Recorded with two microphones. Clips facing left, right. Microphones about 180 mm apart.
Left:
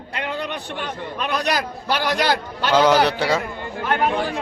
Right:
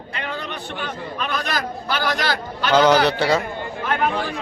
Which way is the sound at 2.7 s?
10° left (ahead or behind).